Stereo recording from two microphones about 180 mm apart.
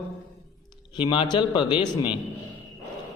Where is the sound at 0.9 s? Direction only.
25° left (ahead or behind).